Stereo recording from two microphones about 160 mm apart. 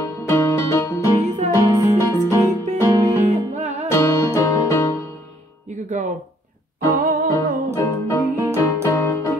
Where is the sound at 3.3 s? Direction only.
45° right (ahead or behind).